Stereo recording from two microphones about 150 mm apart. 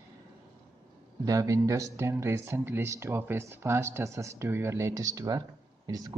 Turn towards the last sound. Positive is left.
turn(degrees=-25)  # may be behind; listen again after turning